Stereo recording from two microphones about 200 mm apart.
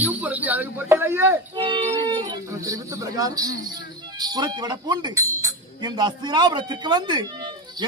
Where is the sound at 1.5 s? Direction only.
25° right (ahead or behind).